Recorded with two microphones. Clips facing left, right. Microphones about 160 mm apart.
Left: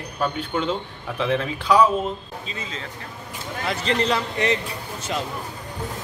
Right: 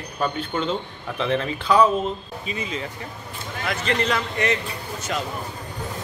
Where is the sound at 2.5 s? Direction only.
15° right (ahead or behind).